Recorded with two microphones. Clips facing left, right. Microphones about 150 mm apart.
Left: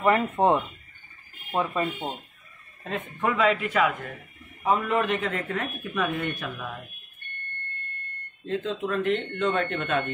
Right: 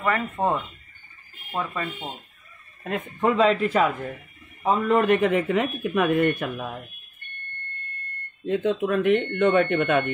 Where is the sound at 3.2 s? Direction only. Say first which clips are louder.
Right 4 dB; 25° right (ahead or behind).